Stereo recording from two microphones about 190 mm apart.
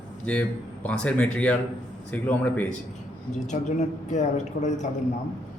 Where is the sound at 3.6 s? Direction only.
40° left (ahead or behind).